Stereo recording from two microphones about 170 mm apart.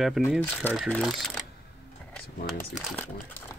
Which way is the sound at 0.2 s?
Centre (ahead or behind).